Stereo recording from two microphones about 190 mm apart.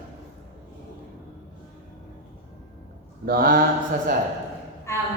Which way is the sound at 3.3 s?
50° right (ahead or behind).